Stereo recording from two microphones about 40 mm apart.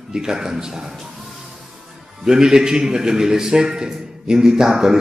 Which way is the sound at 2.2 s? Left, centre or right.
Centre.